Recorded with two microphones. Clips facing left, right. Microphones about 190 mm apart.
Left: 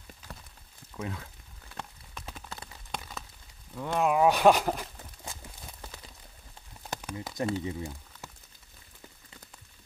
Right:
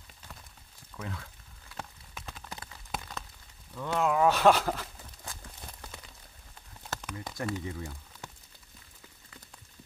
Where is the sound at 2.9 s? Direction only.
Centre (ahead or behind).